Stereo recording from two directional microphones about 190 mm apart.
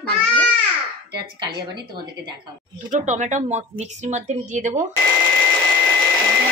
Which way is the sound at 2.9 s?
40° right (ahead or behind).